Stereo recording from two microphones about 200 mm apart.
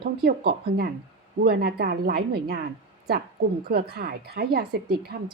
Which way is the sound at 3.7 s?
50° right (ahead or behind).